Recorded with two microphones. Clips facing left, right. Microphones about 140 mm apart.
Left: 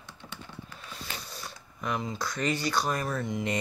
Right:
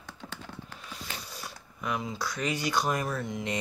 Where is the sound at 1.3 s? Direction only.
5° right (ahead or behind).